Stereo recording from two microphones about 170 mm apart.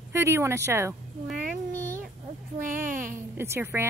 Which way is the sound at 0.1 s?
15° right (ahead or behind).